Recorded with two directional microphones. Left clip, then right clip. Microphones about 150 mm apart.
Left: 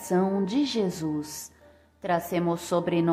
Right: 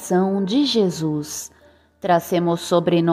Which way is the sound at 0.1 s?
35° right (ahead or behind).